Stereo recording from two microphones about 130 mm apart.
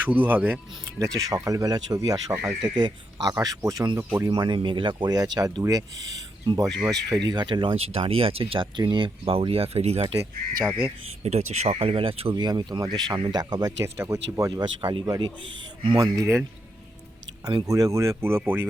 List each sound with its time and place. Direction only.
0.0 s speech: 15° right (ahead or behind)
0.9 s speech: 25° right (ahead or behind); by 10.2 s 50° right (ahead or behind)
10.7 s speech: 10° right (ahead or behind)
11.2 s speech: 55° right (ahead or behind)
12.4 s speech: 30° right (ahead or behind)
14.6 s speech: 35° right (ahead or behind)
17.7 s speech: 25° right (ahead or behind)